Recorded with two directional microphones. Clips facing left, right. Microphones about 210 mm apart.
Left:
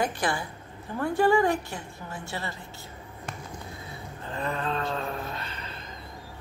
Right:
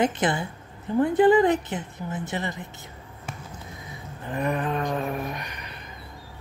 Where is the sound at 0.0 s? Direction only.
20° right (ahead or behind).